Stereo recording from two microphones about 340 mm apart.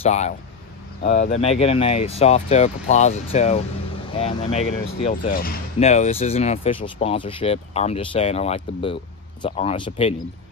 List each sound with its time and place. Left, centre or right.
0.0 s speech: centre